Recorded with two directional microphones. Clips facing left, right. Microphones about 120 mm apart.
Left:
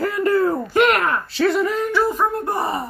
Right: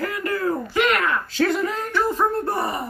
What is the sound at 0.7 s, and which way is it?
Speech, 50° left (ahead or behind).